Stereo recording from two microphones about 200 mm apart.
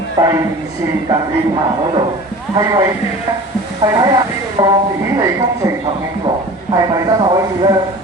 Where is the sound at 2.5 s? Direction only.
15° right (ahead or behind).